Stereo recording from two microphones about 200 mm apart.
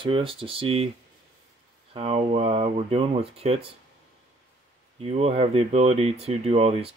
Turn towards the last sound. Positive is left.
turn(degrees=-30)  # may be behind; listen again after turning